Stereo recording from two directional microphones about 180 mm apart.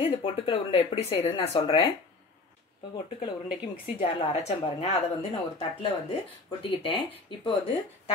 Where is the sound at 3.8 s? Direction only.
35° left (ahead or behind).